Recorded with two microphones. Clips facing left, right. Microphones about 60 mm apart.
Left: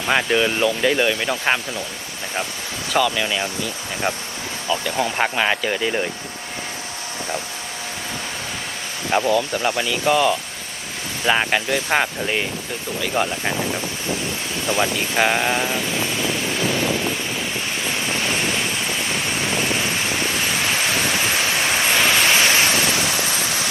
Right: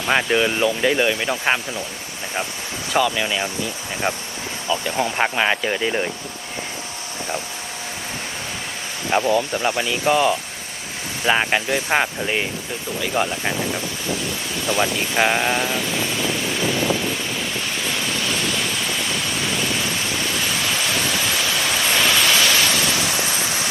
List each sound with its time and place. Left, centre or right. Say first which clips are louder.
0.0 s speech: even; centre
3.0 s speech: even; centre
5.1 s speech: right 1 dB; centre
9.2 s speech: even; right
11.3 s speech: even; centre
13.5 s speech: even; left
14.9 s speech: even; centre
15.9 s wind: even; centre
17.3 s waves: even; left
23.4 s vehicle: even; right